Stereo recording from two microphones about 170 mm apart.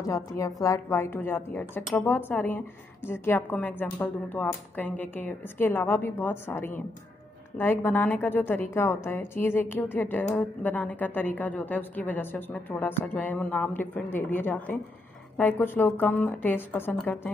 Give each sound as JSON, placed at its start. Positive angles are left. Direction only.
{"t": 0.0, "sound": "speech", "side_deg": 20}